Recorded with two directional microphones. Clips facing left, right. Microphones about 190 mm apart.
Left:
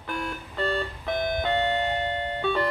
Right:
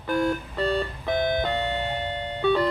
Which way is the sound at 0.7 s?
5° right (ahead or behind).